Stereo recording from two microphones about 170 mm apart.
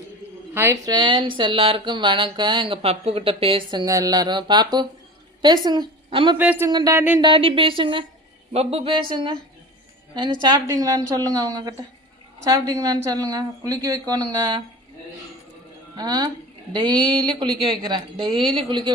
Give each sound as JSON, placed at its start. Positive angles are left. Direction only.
{"t": 0.5, "sound": "a woman's voice", "side_deg": -15}
{"t": 6.3, "sound": "speech", "side_deg": -10}
{"t": 6.7, "sound": "speech", "side_deg": -20}
{"t": 7.2, "sound": "speech", "side_deg": -30}
{"t": 10.4, "sound": "speech", "side_deg": -25}
{"t": 16.0, "sound": "speech", "side_deg": -25}